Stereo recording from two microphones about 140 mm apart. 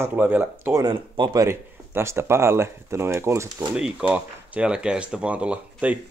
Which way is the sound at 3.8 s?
10° right (ahead or behind).